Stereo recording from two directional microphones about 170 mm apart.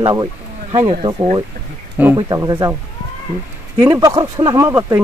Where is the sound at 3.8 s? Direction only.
20° right (ahead or behind).